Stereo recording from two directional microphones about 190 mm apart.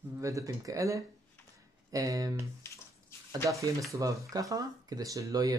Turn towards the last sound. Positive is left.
turn(degrees=-20)  # may be behind; listen again after turning